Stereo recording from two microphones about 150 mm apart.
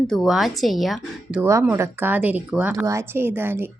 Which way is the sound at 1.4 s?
20° right (ahead or behind).